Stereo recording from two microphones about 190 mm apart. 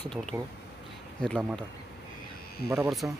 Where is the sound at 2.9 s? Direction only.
Centre (ahead or behind).